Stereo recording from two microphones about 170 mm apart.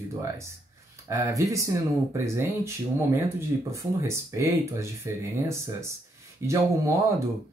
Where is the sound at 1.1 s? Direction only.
20° right (ahead or behind).